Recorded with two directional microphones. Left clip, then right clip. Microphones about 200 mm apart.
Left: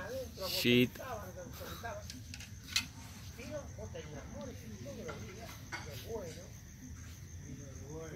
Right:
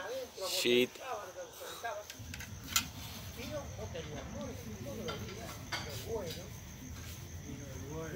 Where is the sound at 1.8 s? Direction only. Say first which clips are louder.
Right 4 dB; 35° left (ahead or behind).